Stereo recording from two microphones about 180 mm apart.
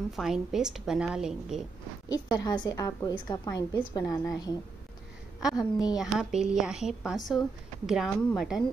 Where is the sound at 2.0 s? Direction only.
20° left (ahead or behind).